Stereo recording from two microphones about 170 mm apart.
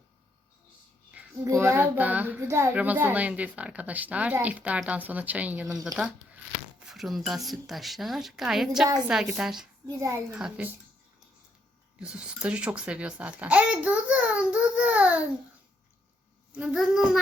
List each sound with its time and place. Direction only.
1.6 s a woman's voice: 10° right (ahead or behind)
9.8 s a woman's voice: 15° right (ahead or behind)
10.3 s speech: 5° right (ahead or behind)
11.9 s a woman's voice: 5° right (ahead or behind)
16.6 s speech: 5° right (ahead or behind)